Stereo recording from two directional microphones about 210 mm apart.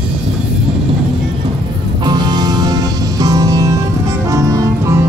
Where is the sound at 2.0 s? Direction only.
20° right (ahead or behind).